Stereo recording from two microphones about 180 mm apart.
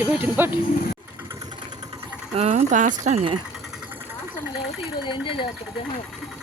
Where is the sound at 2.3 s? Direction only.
40° right (ahead or behind).